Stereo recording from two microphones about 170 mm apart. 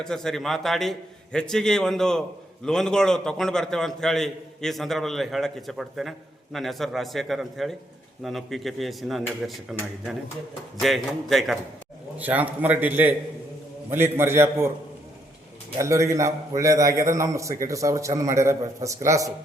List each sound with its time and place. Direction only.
0.0 s a man's voice: 5° left (ahead or behind)
10.8 s a man's voice: centre (ahead or behind)
15.8 s a man's voice: 15° right (ahead or behind)